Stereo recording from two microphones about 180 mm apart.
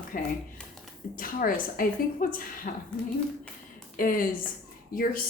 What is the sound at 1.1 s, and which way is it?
A woman's voice, 50° left (ahead or behind).